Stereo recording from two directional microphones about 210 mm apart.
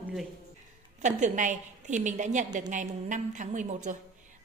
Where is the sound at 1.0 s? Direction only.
35° right (ahead or behind).